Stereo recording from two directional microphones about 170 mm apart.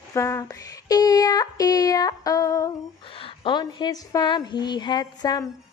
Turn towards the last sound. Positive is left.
turn(degrees=20)  # may be behind; listen again after turning